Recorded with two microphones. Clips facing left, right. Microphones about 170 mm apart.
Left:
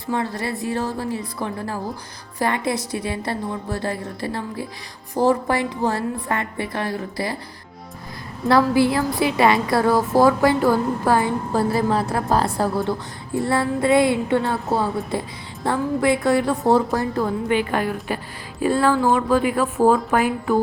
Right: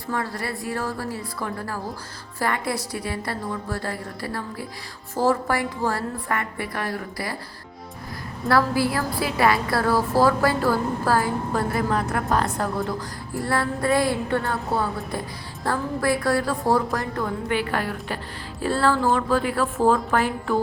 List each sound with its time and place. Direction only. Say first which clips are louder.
0.1 s a woman's voice: left 4 dB; 20° left (ahead or behind)
8.4 s a woman's voice: left 4 dB; 20° left (ahead or behind)